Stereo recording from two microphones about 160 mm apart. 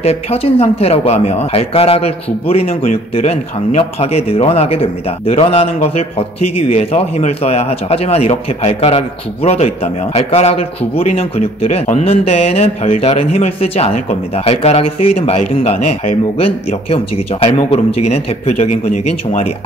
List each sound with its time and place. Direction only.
0.0 s a man's voice: 40° left (ahead or behind)